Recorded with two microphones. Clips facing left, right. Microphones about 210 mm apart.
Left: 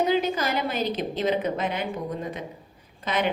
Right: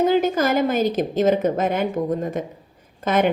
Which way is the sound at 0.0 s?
45° right (ahead or behind).